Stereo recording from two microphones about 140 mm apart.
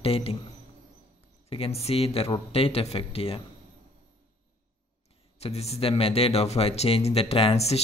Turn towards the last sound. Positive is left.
turn(degrees=45)  # may be behind; listen again after turning